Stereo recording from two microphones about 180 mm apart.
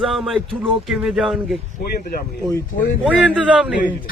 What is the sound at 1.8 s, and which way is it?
Speech, 50° left (ahead or behind).